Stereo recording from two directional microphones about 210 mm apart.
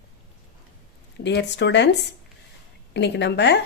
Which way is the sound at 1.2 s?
55° left (ahead or behind).